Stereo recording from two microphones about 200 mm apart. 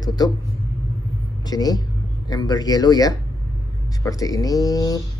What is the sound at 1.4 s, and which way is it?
Speech, 20° left (ahead or behind).